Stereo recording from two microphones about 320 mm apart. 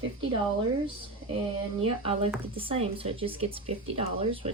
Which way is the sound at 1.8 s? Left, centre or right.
Centre.